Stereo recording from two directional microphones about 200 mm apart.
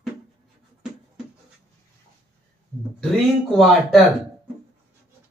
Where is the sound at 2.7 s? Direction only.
5° left (ahead or behind).